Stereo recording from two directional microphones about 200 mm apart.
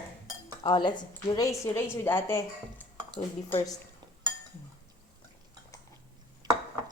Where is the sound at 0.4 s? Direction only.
20° left (ahead or behind).